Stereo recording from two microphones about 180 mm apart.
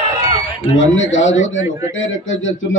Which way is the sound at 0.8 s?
90° left.